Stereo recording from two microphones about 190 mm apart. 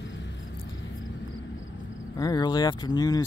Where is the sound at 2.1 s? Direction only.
20° left (ahead or behind).